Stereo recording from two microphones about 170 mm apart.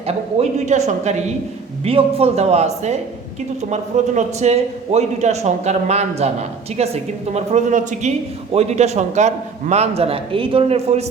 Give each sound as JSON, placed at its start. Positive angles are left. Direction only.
{"t": 0.1, "sound": "speech", "side_deg": -40}